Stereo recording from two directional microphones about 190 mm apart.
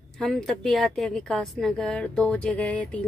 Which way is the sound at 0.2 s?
Centre (ahead or behind).